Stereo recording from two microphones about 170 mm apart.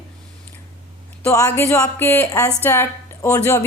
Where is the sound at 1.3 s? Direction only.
15° left (ahead or behind).